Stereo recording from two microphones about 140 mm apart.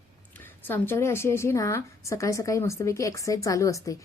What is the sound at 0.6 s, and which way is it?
A woman's voice, 15° left (ahead or behind).